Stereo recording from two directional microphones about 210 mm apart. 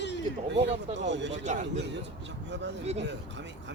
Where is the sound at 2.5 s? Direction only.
55° right (ahead or behind).